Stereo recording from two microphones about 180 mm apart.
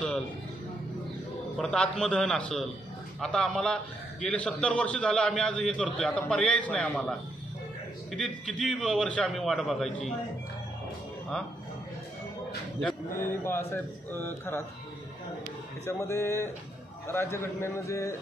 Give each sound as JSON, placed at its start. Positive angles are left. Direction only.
{"t": 1.6, "sound": "a man's voice", "side_deg": 5}
{"t": 13.4, "sound": "a man's voice", "side_deg": 15}
{"t": 15.8, "sound": "a man's voice", "side_deg": 15}